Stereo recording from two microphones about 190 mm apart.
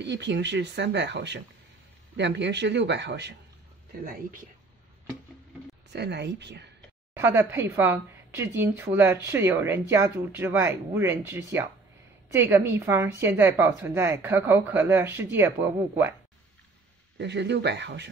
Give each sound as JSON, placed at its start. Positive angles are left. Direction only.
{"t": 0.0, "sound": "speech", "side_deg": -65}
{"t": 3.9, "sound": "speech", "side_deg": -50}
{"t": 5.9, "sound": "speech", "side_deg": -65}
{"t": 7.2, "sound": "a woman's voice", "side_deg": -10}
{"t": 17.2, "sound": "speech", "side_deg": -65}